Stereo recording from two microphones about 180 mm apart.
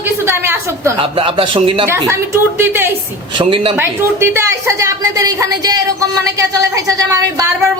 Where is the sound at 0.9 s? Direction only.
30° right (ahead or behind).